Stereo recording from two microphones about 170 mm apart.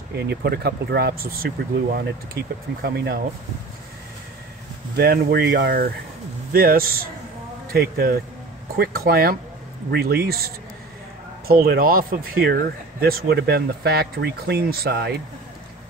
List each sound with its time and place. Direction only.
0.1 s speech: 70° right (ahead or behind)
4.9 s speech: 65° right (ahead or behind)